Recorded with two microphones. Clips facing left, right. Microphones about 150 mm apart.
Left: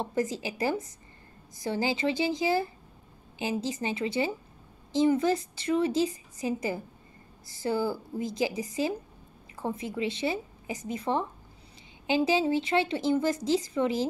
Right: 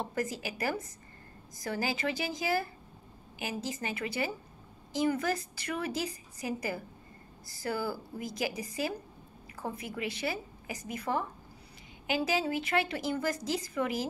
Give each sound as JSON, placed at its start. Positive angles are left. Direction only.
{"t": 0.0, "sound": "speech", "side_deg": 25}